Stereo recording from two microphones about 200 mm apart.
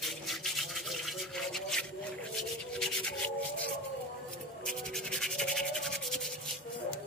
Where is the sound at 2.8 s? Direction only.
5° left (ahead or behind).